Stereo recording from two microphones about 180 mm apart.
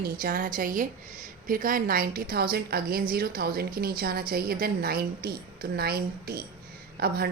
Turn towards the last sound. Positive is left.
turn(degrees=-60)  # may be behind; listen again after turning